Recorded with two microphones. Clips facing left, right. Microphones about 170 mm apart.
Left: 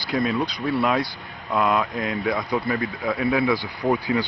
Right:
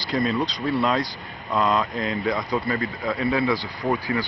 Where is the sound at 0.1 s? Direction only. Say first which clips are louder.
Even; centre (ahead or behind).